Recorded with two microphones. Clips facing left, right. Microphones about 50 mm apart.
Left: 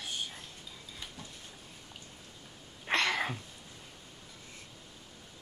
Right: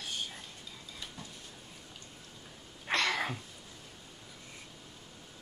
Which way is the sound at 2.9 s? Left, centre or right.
Left.